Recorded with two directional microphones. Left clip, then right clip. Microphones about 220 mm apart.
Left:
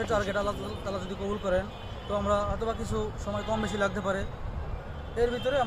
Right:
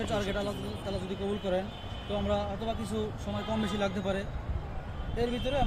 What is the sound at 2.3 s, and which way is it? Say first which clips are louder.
A man's voice: left 4 dB; 10° left (ahead or behind).